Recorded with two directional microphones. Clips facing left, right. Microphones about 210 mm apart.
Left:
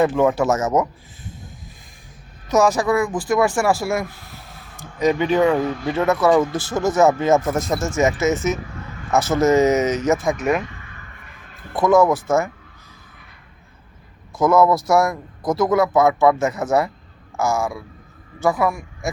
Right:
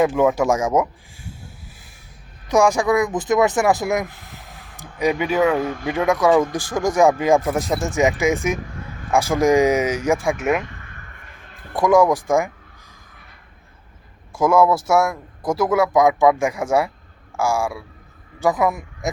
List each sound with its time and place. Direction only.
0.0 s speech: 10° right (ahead or behind)
2.5 s speech: 10° right (ahead or behind)
11.8 s speech: 10° right (ahead or behind)
14.3 s a man's voice: 10° right (ahead or behind)